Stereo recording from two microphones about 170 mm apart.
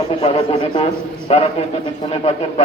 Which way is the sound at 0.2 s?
30° left (ahead or behind).